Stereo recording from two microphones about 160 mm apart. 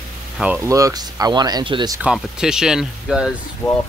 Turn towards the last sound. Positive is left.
turn(degrees=20)  # may be behind; listen again after turning